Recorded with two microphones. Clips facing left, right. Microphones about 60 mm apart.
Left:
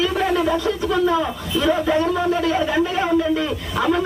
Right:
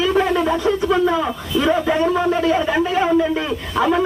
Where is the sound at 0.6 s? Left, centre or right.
Centre.